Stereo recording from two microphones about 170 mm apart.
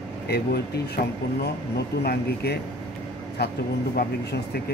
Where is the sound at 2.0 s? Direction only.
70° left (ahead or behind).